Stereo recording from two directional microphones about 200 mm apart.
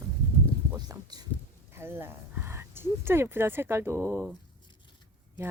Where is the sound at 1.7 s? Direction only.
10° right (ahead or behind).